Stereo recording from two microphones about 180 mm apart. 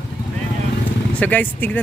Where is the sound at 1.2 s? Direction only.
10° left (ahead or behind).